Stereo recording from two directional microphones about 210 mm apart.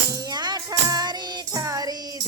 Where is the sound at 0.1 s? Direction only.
20° right (ahead or behind).